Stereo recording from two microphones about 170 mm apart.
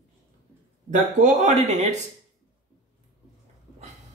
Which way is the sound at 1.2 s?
40° right (ahead or behind).